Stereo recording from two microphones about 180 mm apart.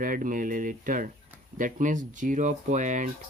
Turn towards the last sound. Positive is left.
turn(degrees=-45)  # may be behind; listen again after turning